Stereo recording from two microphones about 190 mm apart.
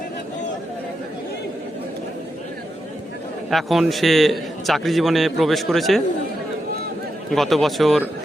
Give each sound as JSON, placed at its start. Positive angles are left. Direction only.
{"t": 3.5, "sound": "a man's voice", "side_deg": 0}
{"t": 7.3, "sound": "a man's voice", "side_deg": 0}